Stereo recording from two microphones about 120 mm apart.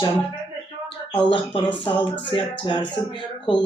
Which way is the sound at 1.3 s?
45° left (ahead or behind).